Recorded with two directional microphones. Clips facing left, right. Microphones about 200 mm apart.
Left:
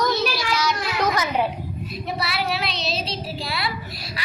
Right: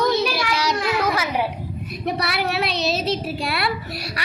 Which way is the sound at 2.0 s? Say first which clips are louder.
Right 4 dB; 65° right (ahead or behind).